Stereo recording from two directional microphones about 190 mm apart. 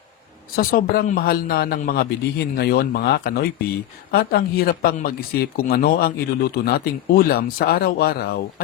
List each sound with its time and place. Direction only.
0.5 s speech: 50° left (ahead or behind)